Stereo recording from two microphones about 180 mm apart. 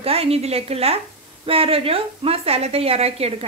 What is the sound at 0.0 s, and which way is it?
A woman's voice, 35° right (ahead or behind).